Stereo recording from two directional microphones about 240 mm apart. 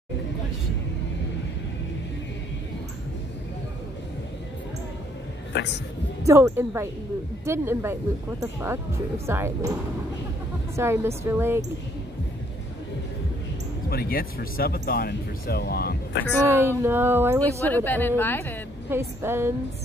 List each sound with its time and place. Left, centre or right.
6.2 s speech: centre
10.8 s speech: centre
13.8 s speech: left
16.4 s speech: centre
17.4 s speech: centre
18.9 s speech: centre